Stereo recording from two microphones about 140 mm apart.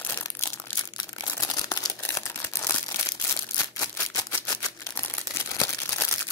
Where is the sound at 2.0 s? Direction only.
20° left (ahead or behind).